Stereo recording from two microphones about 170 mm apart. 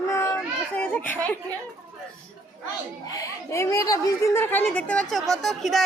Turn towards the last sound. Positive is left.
turn(degrees=0)  # may be behind; listen again after turning